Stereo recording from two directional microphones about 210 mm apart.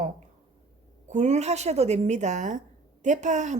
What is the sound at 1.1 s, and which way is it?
A woman's voice, 35° right (ahead or behind).